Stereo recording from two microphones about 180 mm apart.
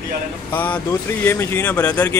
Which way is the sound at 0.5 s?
10° left (ahead or behind).